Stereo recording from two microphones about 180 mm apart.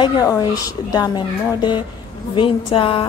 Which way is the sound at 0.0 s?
25° left (ahead or behind).